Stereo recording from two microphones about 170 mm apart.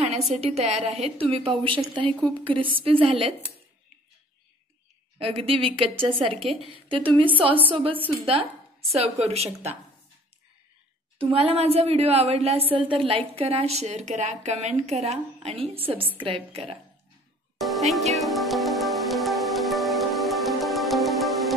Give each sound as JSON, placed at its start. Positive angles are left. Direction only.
{"t": 0.3, "sound": "a woman's voice", "side_deg": -40}
{"t": 5.2, "sound": "a woman's voice", "side_deg": -35}
{"t": 11.1, "sound": "a woman's voice", "side_deg": -35}
{"t": 17.6, "sound": "music", "side_deg": 0}